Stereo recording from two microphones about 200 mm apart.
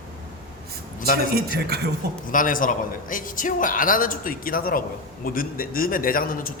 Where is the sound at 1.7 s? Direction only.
50° right (ahead or behind).